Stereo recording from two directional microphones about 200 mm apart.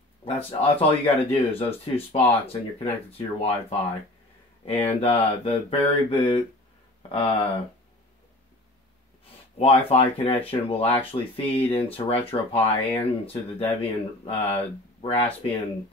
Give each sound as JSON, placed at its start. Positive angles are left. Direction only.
{"t": 0.5, "sound": "speech", "side_deg": 25}
{"t": 9.6, "sound": "speech", "side_deg": 30}